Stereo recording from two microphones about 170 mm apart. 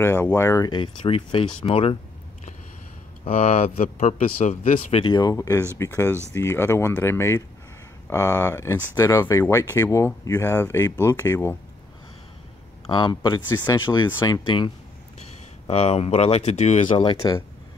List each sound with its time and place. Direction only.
0.0 s speech: 15° left (ahead or behind); by 2.0 s 35° left (ahead or behind)
3.3 s speech: 40° left (ahead or behind)
5.0 s speech: 25° left (ahead or behind)
12.8 s speech: 25° left (ahead or behind)
15.1 s speech: 40° left (ahead or behind)
17.2 s speech: 25° left (ahead or behind)